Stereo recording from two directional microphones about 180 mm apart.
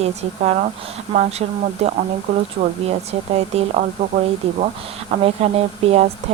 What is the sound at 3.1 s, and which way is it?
Speech, 35° right (ahead or behind).